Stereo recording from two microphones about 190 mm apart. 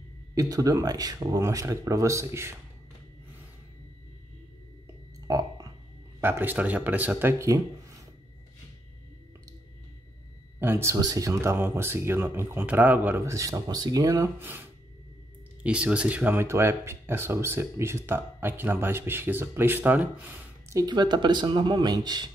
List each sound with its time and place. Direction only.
0.3 s speech: 20° right (ahead or behind)
5.3 s a sound: 15° right (ahead or behind)
6.2 s speech: 10° right (ahead or behind)
10.6 s speech: 15° right (ahead or behind)
20.8 s speech: 20° right (ahead or behind)